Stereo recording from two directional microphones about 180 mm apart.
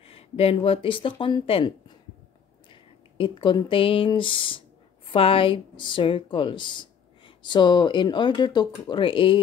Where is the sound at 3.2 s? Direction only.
25° left (ahead or behind).